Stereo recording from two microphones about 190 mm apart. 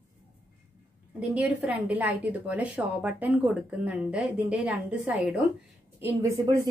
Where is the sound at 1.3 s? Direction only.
5° right (ahead or behind).